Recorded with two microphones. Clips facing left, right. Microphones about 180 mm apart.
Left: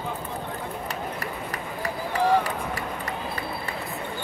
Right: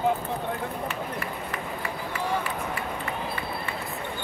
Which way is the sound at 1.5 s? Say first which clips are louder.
Left 1 dB; 40° left (ahead or behind).